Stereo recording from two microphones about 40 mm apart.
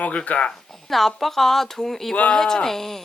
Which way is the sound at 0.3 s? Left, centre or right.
Left.